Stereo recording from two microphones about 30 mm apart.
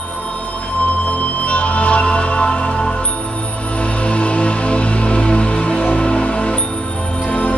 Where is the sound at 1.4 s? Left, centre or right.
Left.